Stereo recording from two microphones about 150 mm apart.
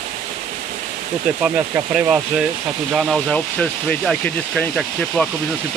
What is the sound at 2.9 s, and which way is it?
Speech, centre (ahead or behind).